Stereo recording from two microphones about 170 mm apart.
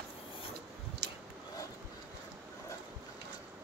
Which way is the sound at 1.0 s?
75° right (ahead or behind).